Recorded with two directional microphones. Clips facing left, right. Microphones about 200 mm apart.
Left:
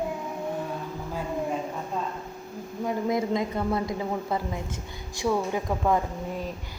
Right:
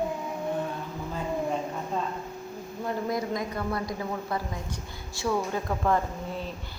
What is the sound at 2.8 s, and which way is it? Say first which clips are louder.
A woman's voice: left 3 dB; 20° left (ahead or behind).